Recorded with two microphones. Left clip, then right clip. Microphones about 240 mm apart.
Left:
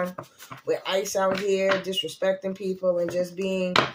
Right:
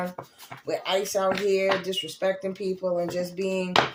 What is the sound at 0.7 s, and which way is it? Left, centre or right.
Speech, right.